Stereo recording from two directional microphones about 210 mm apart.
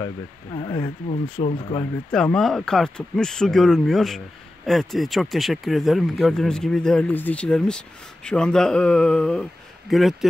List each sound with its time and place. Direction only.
0.0 s speech: 20° left (ahead or behind)
2.0 s speech: 5° left (ahead or behind)